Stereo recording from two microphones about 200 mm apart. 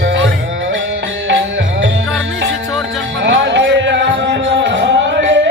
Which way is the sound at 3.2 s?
65° right (ahead or behind).